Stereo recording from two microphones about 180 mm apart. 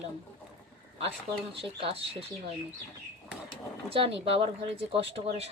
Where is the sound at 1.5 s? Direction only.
30° right (ahead or behind).